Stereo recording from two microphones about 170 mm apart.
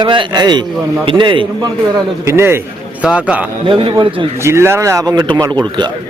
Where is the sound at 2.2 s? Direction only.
15° right (ahead or behind).